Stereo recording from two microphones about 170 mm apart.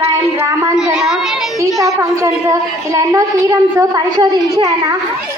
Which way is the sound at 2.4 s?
20° right (ahead or behind).